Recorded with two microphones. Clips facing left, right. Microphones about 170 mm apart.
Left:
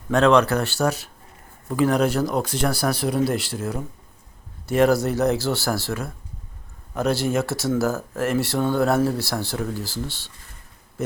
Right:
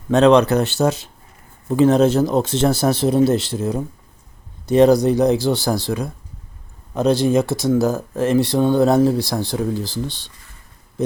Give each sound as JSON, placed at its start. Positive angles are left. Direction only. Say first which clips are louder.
{"t": 0.1, "sound": "speech", "louder": "right 4 dB", "side_deg": -20}